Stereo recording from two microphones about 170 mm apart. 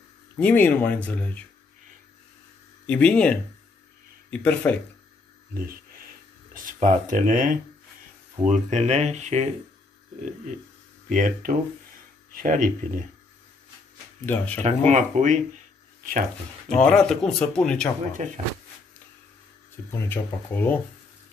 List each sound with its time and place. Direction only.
0.4 s speech: 10° left (ahead or behind)
2.9 s speech: 10° left (ahead or behind)
5.5 s a sound: 55° right (ahead or behind)
6.5 s speech: 50° right (ahead or behind)
11.1 s speech: 50° right (ahead or behind)
14.2 s speech: 10° left (ahead or behind)
14.9 s speech: 45° right (ahead or behind)
16.7 s speech: 5° left (ahead or behind)
18.2 s speech: 45° right (ahead or behind)
19.9 s speech: 10° left (ahead or behind)